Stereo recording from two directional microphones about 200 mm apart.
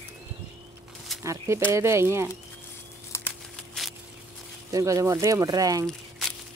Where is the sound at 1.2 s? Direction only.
15° right (ahead or behind).